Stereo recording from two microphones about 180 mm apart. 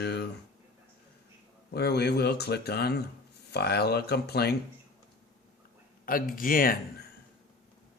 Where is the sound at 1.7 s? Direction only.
65° left (ahead or behind).